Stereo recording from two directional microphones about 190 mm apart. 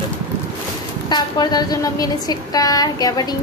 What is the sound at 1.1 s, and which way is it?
A woman's voice, 20° left (ahead or behind).